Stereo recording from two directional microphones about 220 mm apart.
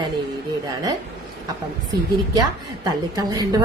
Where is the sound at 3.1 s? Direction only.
15° right (ahead or behind).